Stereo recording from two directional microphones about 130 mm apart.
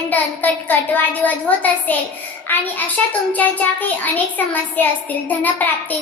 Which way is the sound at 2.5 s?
15° left (ahead or behind).